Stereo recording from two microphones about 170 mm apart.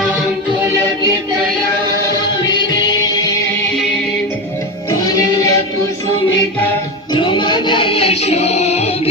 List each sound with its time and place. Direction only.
2.5 s music: 25° left (ahead or behind)
4.9 s music: 20° left (ahead or behind)
7.1 s music: 30° left (ahead or behind)